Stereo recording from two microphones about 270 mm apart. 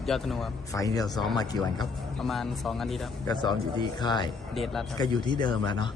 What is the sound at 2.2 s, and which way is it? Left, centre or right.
Speech, centre.